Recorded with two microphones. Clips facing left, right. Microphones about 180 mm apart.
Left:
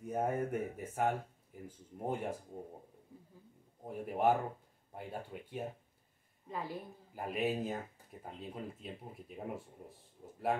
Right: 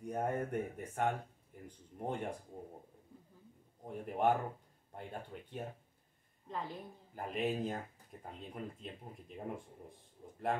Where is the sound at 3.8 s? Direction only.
5° left (ahead or behind).